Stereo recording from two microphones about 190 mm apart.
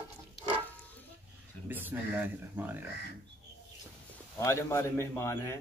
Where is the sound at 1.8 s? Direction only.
10° right (ahead or behind).